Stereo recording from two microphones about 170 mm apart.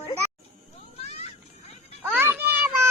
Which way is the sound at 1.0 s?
35° left (ahead or behind).